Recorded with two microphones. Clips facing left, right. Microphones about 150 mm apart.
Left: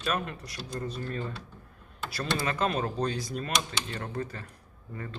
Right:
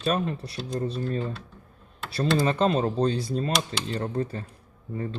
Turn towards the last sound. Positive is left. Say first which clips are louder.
# right 8 dB
turn(degrees=-25)  # may be behind; listen again after turning